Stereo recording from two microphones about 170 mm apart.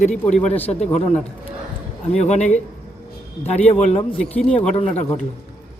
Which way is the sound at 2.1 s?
40° left (ahead or behind).